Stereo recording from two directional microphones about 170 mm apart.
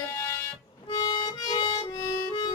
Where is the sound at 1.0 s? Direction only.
30° left (ahead or behind).